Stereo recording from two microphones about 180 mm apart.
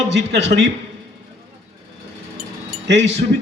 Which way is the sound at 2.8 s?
75° right (ahead or behind).